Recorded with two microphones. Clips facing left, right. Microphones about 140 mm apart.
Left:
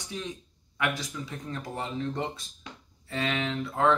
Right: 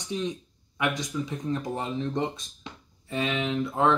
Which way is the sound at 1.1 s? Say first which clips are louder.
Right 7 dB; 15° right (ahead or behind).